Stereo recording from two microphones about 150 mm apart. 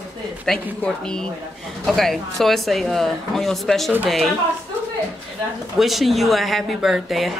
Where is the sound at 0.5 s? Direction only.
5° left (ahead or behind).